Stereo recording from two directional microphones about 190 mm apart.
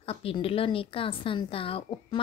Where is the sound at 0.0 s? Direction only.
30° left (ahead or behind).